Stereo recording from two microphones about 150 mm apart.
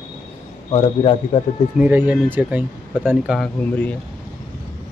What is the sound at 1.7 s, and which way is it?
Speech, 10° right (ahead or behind).